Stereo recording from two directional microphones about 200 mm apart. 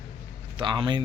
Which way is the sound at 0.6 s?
25° right (ahead or behind).